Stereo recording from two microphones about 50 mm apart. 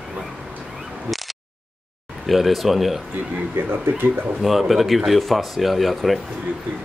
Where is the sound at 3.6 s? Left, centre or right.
Right.